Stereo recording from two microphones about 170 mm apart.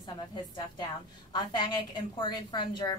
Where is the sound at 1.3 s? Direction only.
25° left (ahead or behind).